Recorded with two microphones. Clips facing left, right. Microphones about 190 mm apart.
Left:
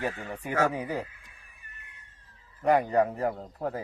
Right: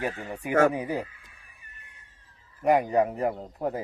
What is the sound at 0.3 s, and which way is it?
Speech, 10° right (ahead or behind).